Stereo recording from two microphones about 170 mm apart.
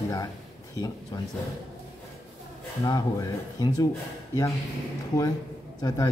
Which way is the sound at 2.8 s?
20° left (ahead or behind).